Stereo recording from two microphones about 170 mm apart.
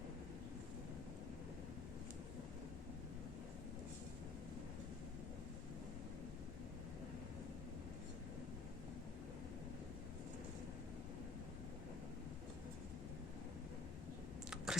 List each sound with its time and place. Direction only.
14.5 s typing: 5° right (ahead or behind)